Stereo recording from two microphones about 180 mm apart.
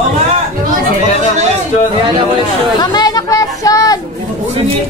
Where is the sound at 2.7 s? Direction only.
20° left (ahead or behind).